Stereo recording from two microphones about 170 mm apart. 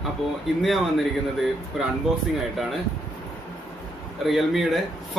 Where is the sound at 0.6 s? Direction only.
Centre (ahead or behind).